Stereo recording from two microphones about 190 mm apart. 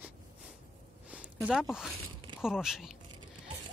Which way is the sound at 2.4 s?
5° right (ahead or behind).